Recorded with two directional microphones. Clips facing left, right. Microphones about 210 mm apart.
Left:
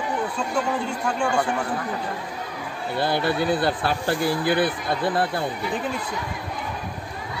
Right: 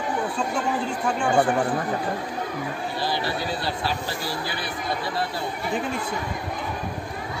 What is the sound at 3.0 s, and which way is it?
Speech, 55° left (ahead or behind).